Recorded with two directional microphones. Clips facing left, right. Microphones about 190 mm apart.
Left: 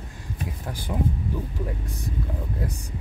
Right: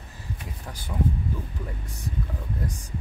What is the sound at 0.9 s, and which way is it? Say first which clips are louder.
Speech: left 2 dB; 20° left (ahead or behind).